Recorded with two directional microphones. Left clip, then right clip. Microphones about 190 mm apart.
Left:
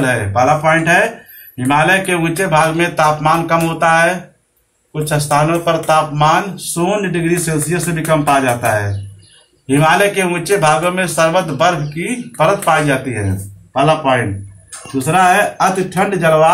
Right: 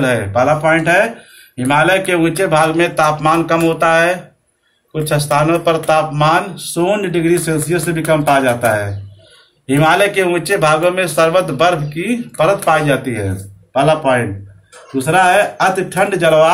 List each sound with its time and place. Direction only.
0.0 s speech: 50° right (ahead or behind)